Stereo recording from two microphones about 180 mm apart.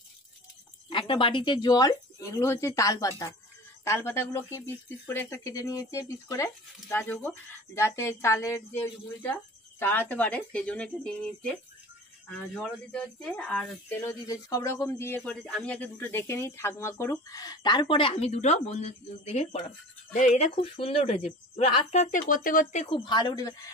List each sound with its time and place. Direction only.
0.8 s speech: 30° left (ahead or behind); by 10.9 s 5° left (ahead or behind)
12.4 s speech: 5° left (ahead or behind)
13.9 s speech: 15° left (ahead or behind); by 22.8 s 45° left (ahead or behind)
22.8 s speech: 25° left (ahead or behind)